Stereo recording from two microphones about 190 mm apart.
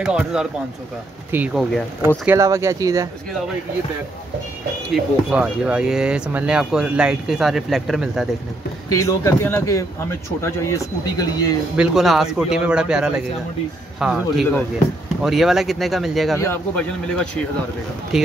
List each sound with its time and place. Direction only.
0.0 s speech: 5° right (ahead or behind)
2.2 s speech: 15° right (ahead or behind)
4.9 s speech: 5° right (ahead or behind)
8.8 s speech: 15° left (ahead or behind)
11.7 s speech: 5° right (ahead or behind)
16.3 s speech: 15° left (ahead or behind)
18.1 s speech: centre (ahead or behind)